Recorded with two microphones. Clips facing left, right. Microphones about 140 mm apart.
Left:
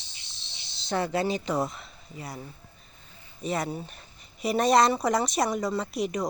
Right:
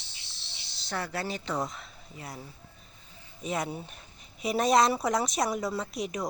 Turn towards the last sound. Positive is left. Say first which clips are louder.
# left 4 dB
turn(degrees=0)  # may be behind; listen again after turning